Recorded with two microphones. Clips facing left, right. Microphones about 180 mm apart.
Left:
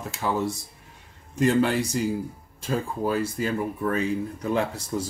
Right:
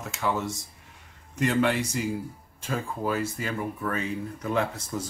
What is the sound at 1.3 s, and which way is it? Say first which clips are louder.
Speech: left 3 dB; 35° left (ahead or behind).